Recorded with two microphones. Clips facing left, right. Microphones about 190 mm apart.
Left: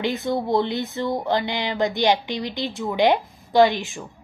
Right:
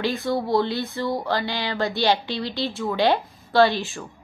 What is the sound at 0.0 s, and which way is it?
Speech, 20° left (ahead or behind).